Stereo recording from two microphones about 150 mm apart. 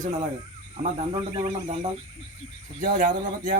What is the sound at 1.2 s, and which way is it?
Speech, 40° right (ahead or behind).